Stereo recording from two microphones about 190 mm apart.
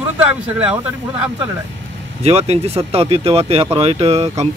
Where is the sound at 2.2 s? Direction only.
30° right (ahead or behind).